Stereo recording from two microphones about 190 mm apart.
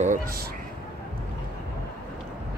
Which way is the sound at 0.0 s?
45° right (ahead or behind).